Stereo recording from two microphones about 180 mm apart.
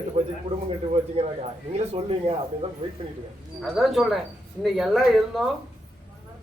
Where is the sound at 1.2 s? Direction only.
35° right (ahead or behind).